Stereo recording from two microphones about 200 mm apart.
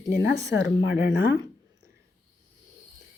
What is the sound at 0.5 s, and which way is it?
Speech, 60° left (ahead or behind).